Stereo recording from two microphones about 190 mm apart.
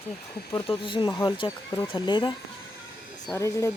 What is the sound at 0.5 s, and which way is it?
A woman's voice, 30° left (ahead or behind).